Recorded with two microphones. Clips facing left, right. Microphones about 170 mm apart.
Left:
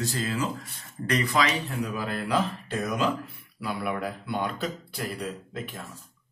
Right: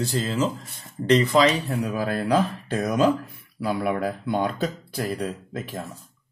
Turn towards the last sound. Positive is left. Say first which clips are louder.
# right 4 dB
turn(degrees=-40)  # may be behind; listen again after turning